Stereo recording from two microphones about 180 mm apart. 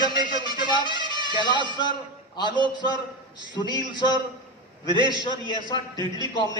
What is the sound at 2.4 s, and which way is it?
Speech, 25° right (ahead or behind).